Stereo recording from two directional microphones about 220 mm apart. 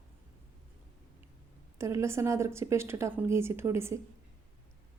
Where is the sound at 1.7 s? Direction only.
10° right (ahead or behind).